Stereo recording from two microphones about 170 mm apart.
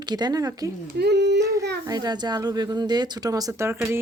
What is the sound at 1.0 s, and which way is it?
Speech, 80° right.